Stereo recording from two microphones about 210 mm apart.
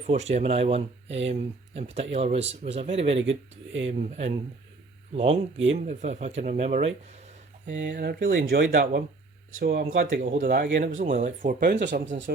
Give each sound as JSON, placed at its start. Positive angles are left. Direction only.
{"t": 0.1, "sound": "speech", "side_deg": -30}
{"t": 3.2, "sound": "speech", "side_deg": -60}
{"t": 3.8, "sound": "speech", "side_deg": -30}
{"t": 7.9, "sound": "speech", "side_deg": -45}
{"t": 11.8, "sound": "speech", "side_deg": -55}